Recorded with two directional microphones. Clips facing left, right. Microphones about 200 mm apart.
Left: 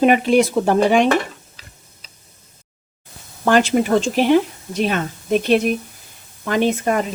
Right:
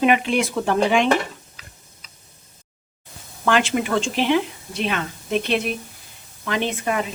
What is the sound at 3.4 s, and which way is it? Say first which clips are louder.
Speech: left 5 dB; 40° left (ahead or behind).